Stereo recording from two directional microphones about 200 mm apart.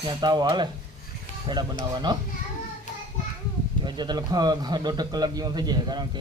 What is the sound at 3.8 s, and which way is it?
Speech, 20° right (ahead or behind).